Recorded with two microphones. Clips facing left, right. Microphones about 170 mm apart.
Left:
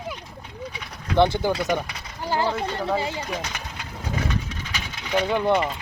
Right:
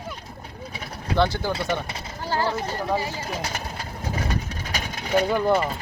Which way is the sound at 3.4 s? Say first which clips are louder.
Right 3 dB; 35° right (ahead or behind).